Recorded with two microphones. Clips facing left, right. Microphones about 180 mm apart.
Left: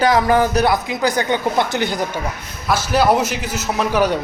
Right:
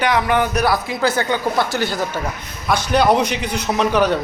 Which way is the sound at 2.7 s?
5° left (ahead or behind).